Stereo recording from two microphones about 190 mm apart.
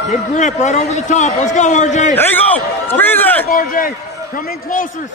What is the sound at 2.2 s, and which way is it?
A man's voice, 10° left (ahead or behind).